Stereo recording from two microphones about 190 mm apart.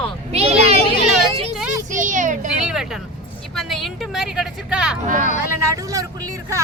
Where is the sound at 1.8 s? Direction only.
40° right (ahead or behind).